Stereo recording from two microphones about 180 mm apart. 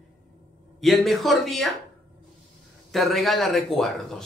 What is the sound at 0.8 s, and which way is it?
Speech, centre (ahead or behind).